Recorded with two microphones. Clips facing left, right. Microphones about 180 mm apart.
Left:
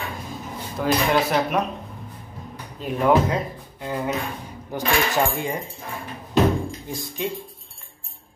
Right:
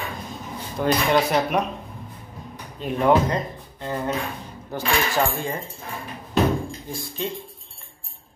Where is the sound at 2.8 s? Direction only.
Centre (ahead or behind).